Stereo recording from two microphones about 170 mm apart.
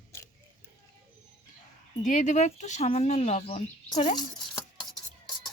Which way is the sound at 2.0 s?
45° left (ahead or behind).